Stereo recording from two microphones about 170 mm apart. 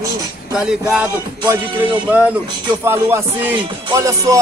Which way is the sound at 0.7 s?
5° right (ahead or behind).